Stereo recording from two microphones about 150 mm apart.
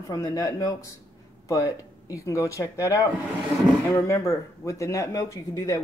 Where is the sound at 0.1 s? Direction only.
25° left (ahead or behind).